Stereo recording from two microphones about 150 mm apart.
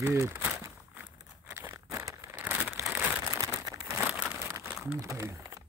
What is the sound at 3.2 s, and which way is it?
Crumpling, 20° right (ahead or behind).